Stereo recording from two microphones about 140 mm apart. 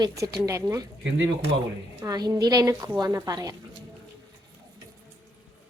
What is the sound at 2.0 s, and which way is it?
A woman's voice, 30° right (ahead or behind).